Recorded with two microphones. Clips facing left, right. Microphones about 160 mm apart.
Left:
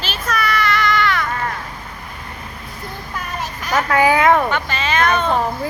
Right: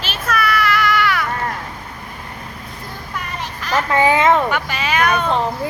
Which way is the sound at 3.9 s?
20° right (ahead or behind).